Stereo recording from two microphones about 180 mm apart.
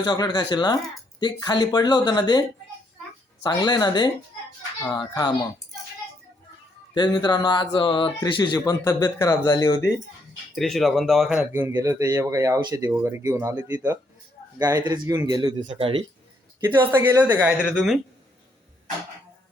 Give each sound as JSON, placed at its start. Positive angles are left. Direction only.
{"t": 0.0, "sound": "speech", "side_deg": 25}
{"t": 3.4, "sound": "speech", "side_deg": 25}
{"t": 6.9, "sound": "speech", "side_deg": 25}
{"t": 10.5, "sound": "speech", "side_deg": 0}
{"t": 17.2, "sound": "speech", "side_deg": -10}
{"t": 17.6, "sound": "speech", "side_deg": 10}